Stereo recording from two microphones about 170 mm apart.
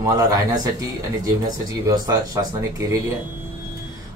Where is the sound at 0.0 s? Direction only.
20° right (ahead or behind).